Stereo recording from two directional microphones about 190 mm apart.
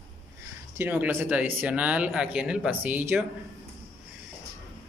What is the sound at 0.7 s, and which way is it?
Speech, 10° right (ahead or behind).